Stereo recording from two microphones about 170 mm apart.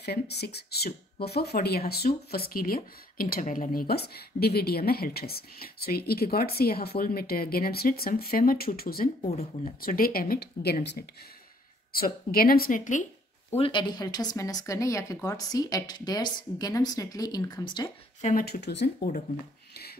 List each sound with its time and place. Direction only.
0.0 s speech: 75° left (ahead or behind)
9.3 s speech: 40° left (ahead or behind)
9.8 s speech: 60° left (ahead or behind)
11.9 s speech: 60° left (ahead or behind)
13.6 s a woman's voice: 30° left (ahead or behind)
18.2 s speech: 60° left (ahead or behind); by 19.0 s 80° left